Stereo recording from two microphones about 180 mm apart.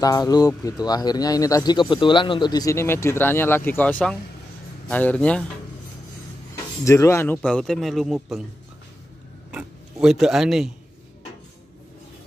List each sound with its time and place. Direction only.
0.0 s speech: 20° left (ahead or behind)
6.5 s speech: 15° left (ahead or behind)
7.4 s speech: centre (ahead or behind)
9.5 s speech: 5° right (ahead or behind)